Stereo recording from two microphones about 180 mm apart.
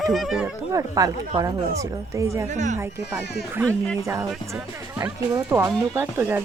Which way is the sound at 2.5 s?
40° right (ahead or behind).